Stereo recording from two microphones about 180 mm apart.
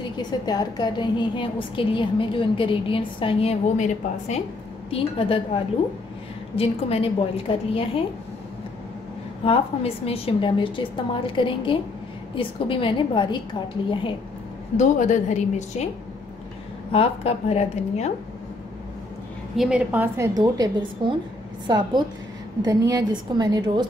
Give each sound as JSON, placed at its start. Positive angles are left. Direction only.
{"t": 0.2, "sound": "a woman's voice", "side_deg": 25}
{"t": 9.4, "sound": "a woman's voice", "side_deg": 30}
{"t": 14.8, "sound": "a woman's voice", "side_deg": 45}
{"t": 16.9, "sound": "a woman's voice", "side_deg": 35}
{"t": 19.5, "sound": "a woman's voice", "side_deg": -5}
{"t": 20.3, "sound": "a woman's voice", "side_deg": -20}